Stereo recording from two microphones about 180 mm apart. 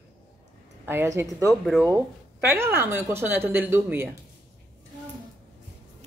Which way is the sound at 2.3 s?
15° right (ahead or behind).